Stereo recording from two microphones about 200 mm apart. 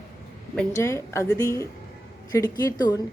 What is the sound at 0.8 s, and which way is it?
A woman's voice, 15° left (ahead or behind).